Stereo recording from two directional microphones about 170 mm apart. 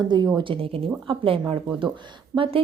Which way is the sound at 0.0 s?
25° right (ahead or behind).